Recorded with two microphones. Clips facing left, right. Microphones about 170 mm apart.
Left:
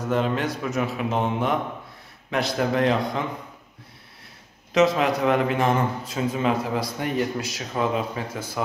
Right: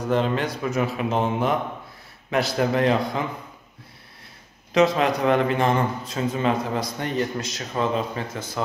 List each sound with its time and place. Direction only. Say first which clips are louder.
0.1 s a man's voice: right 1 dB; centre (ahead or behind)
4.7 s a man's voice: even; centre (ahead or behind)